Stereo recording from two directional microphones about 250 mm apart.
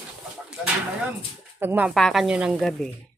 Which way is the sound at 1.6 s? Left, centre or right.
Centre.